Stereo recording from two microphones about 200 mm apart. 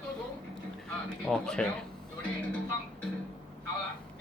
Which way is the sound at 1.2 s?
5° left (ahead or behind).